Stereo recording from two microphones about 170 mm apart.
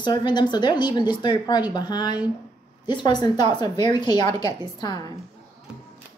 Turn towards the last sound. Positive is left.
turn(degrees=25)  # may be behind; listen again after turning